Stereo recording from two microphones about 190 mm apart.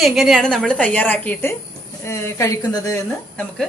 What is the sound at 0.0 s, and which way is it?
A woman's voice, centre (ahead or behind).